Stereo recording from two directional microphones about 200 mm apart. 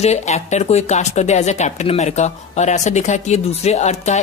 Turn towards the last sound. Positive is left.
turn(degrees=35)  # may be behind; listen again after turning